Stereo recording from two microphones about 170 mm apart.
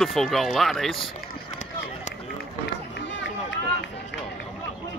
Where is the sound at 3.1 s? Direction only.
90° left.